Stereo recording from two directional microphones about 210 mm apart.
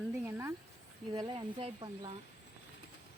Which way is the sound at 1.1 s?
25° right (ahead or behind).